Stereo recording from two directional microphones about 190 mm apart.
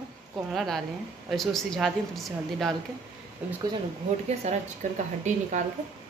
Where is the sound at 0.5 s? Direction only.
Centre (ahead or behind).